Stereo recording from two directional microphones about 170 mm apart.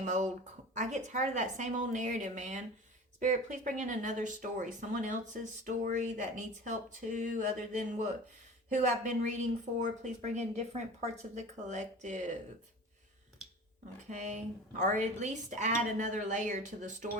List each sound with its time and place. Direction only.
0.0 s speech: 45° right (ahead or behind)
14.1 s speech: 45° right (ahead or behind)